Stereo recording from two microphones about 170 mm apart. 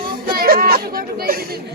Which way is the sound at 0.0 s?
60° right (ahead or behind).